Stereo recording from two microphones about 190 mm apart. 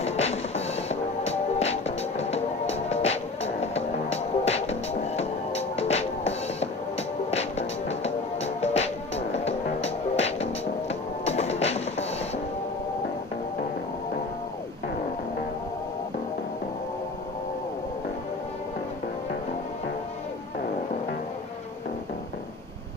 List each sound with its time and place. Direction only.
0.0 s music: 35° left (ahead or behind)